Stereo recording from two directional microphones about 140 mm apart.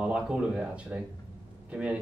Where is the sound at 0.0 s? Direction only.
5° right (ahead or behind).